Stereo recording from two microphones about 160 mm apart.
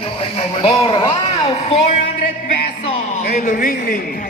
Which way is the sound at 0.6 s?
35° left (ahead or behind).